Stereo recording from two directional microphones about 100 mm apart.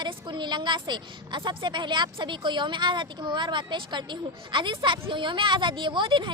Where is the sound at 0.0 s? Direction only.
50° right (ahead or behind).